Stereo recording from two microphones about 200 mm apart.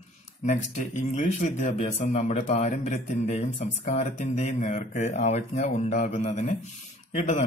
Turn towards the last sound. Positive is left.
turn(degrees=35)  # may be behind; listen again after turning